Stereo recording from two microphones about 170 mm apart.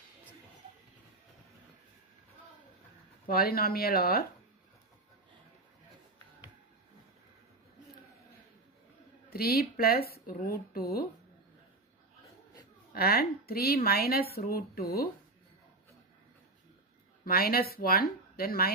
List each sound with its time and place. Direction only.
3.3 s speech: 65° left (ahead or behind)
9.3 s speech: 65° left (ahead or behind)
12.9 s speech: 65° left (ahead or behind)
17.2 s speech: 60° left (ahead or behind)